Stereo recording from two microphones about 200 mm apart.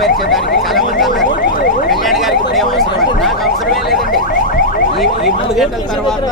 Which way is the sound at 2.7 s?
Centre (ahead or behind).